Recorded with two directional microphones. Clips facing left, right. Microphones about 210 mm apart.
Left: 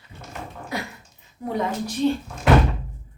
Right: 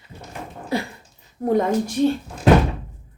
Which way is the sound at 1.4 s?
45° right (ahead or behind).